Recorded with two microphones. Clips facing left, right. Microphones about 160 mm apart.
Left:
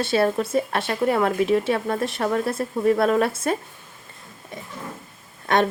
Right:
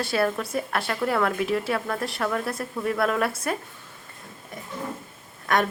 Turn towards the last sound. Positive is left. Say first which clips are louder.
# left 3 dB
turn(degrees=25)  # may be behind; listen again after turning